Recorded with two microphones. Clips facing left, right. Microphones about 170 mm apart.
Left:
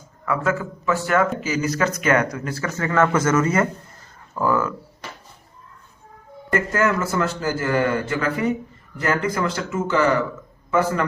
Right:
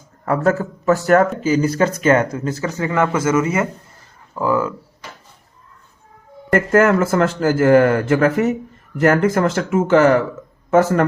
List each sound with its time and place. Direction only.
0.3 s a man's voice: 40° right (ahead or behind); by 4.7 s 15° right (ahead or behind)
6.5 s a man's voice: 55° right (ahead or behind)
9.9 s speech: 75° right (ahead or behind)
10.7 s a man's voice: 45° right (ahead or behind)